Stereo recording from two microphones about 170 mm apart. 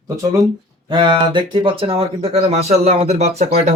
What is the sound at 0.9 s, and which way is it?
Speech, 30° right (ahead or behind).